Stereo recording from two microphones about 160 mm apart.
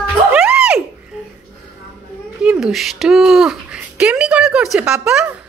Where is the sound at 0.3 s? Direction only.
5° right (ahead or behind).